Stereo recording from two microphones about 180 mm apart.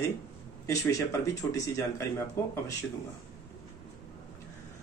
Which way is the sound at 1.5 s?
15° left (ahead or behind).